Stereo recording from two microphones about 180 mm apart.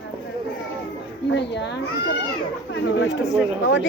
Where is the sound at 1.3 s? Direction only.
75° left (ahead or behind).